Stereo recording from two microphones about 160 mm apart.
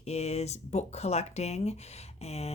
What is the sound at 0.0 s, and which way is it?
Speech, 45° left (ahead or behind).